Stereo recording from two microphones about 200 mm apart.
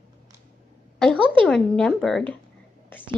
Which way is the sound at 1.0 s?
5° left (ahead or behind).